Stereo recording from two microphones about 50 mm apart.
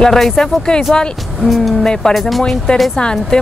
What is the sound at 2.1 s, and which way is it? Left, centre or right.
Speech, centre.